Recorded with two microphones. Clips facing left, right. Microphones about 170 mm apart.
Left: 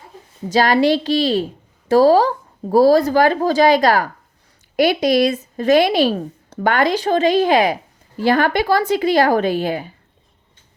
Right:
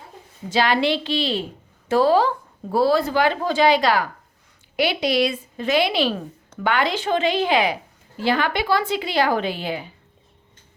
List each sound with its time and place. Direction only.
0.5 s a woman's voice: 40° left (ahead or behind)